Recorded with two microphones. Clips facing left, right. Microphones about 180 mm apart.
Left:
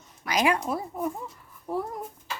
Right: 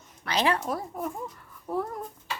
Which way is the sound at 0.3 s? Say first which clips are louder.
Left 1 dB; 10° left (ahead or behind).